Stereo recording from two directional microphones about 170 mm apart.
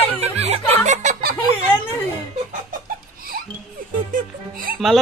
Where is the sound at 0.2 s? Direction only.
40° right (ahead or behind).